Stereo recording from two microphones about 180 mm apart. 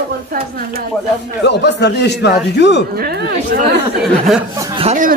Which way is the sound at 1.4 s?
70° left (ahead or behind).